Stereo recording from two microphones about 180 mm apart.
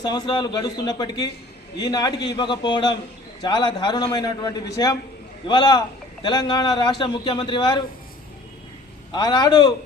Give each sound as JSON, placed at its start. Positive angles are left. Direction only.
{"t": 0.0, "sound": "a man's voice", "side_deg": 25}
{"t": 9.1, "sound": "a man's voice", "side_deg": 25}